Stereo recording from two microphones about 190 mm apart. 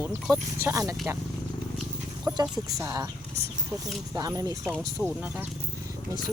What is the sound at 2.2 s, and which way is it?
Speech, 15° right (ahead or behind).